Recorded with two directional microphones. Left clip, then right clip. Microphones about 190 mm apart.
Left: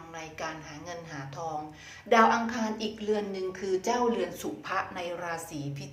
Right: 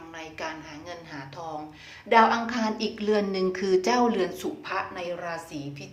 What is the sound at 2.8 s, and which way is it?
A woman's voice, 25° right (ahead or behind).